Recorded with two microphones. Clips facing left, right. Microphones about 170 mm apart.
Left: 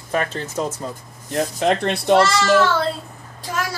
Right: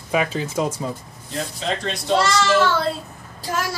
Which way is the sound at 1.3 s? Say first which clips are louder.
Left 7 dB; 60° left (ahead or behind).